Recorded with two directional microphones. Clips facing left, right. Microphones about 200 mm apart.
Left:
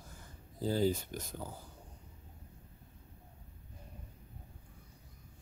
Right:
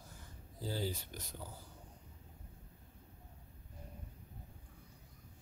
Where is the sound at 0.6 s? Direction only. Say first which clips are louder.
Left 9 dB; 50° left (ahead or behind).